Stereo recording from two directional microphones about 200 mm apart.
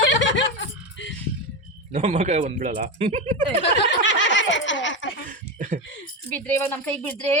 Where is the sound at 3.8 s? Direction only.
65° left (ahead or behind).